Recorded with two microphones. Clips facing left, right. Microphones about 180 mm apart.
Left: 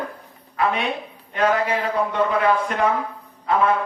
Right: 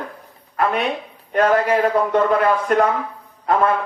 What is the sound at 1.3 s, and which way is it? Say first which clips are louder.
A man's voice: right 4 dB; 50° right (ahead or behind).